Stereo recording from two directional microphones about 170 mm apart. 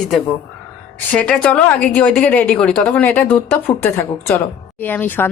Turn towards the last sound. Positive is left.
turn(degrees=10)  # may be behind; listen again after turning